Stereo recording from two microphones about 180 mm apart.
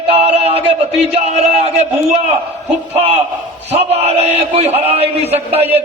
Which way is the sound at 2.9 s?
35° right (ahead or behind).